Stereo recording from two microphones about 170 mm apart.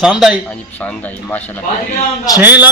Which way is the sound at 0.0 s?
5° right (ahead or behind).